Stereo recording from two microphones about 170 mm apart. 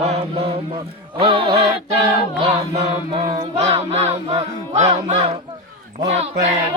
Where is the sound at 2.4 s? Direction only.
30° right (ahead or behind).